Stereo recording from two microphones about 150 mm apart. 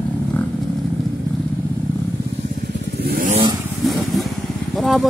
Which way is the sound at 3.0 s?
90° right.